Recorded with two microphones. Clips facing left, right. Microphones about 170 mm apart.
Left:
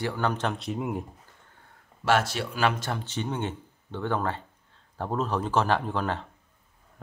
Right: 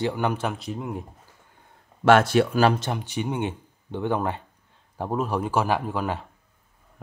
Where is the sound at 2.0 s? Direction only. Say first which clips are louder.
Right 8 dB; 55° right (ahead or behind).